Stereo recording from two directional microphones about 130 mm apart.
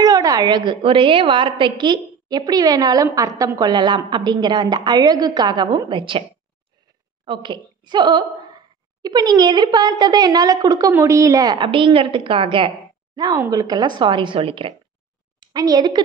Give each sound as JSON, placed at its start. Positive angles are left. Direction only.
{"t": 0.0, "sound": "a woman's voice", "side_deg": -30}
{"t": 7.2, "sound": "a woman's voice", "side_deg": -40}
{"t": 15.4, "sound": "a woman's voice", "side_deg": -30}